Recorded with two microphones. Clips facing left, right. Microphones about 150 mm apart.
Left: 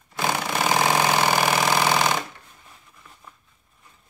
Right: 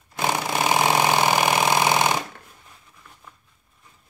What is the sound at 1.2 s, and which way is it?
Engine, 15° right (ahead or behind).